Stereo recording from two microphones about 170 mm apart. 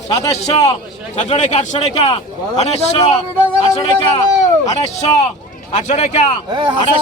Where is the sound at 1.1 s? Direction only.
40° left (ahead or behind).